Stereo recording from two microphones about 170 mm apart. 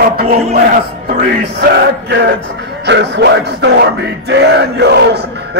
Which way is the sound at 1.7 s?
90° right.